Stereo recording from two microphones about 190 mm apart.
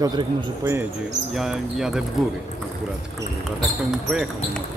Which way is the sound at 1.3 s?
Centre (ahead or behind).